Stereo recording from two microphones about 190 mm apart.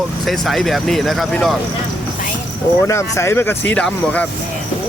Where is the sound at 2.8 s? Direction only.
15° left (ahead or behind).